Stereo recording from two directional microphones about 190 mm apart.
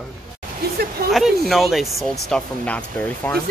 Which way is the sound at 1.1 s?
Centre (ahead or behind).